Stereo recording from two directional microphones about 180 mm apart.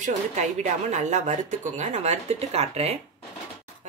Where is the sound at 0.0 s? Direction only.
40° right (ahead or behind).